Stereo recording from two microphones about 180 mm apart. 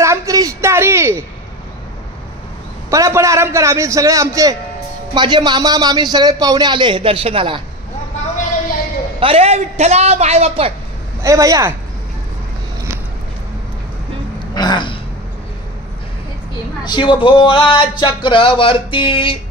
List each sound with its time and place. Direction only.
0.0 s a sound: 15° right (ahead or behind)
2.9 s a man's voice: 15° right (ahead or behind)
9.2 s a man's voice: 35° right (ahead or behind)
11.2 s a man's voice: 20° right (ahead or behind)
14.5 s a sound: 25° left (ahead or behind)
16.8 s speech: 25° left (ahead or behind)